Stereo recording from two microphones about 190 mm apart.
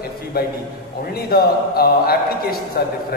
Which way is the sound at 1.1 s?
55° left (ahead or behind).